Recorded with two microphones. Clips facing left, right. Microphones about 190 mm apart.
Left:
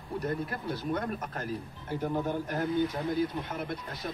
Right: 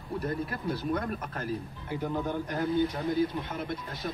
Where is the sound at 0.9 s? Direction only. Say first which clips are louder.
Right 1 dB; 30° left (ahead or behind).